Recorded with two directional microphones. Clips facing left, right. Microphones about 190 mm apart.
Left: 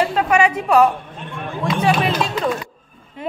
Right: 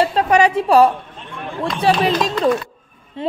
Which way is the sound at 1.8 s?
35° right (ahead or behind).